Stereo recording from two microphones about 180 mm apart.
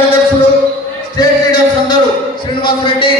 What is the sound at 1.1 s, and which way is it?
Music, 20° left (ahead or behind).